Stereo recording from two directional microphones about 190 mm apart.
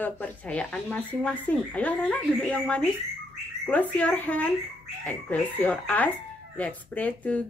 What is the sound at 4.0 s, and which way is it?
Speech, 5° left (ahead or behind).